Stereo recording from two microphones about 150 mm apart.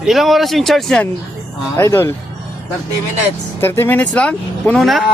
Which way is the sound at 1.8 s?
15° left (ahead or behind).